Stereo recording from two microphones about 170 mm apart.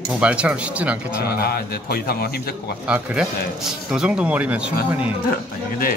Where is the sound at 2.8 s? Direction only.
5° right (ahead or behind).